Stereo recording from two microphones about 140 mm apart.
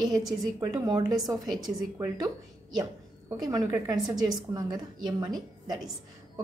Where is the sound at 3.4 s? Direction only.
30° right (ahead or behind).